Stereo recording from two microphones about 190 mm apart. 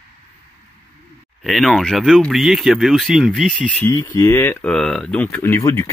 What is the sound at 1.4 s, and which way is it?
Speech, centre (ahead or behind).